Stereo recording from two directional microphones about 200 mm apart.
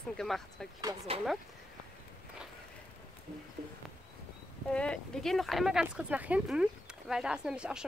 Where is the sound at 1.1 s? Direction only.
30° right (ahead or behind).